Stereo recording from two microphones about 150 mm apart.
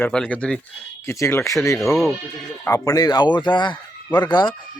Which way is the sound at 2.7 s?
20° left (ahead or behind).